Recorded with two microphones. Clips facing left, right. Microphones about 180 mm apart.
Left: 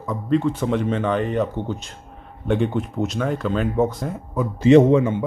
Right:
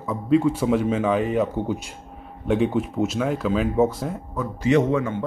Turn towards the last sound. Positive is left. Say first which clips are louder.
# left 6 dB
turn(degrees=25)  # may be behind; listen again after turning